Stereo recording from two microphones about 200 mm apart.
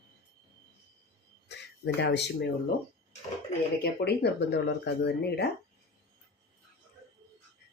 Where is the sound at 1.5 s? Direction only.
60° left (ahead or behind).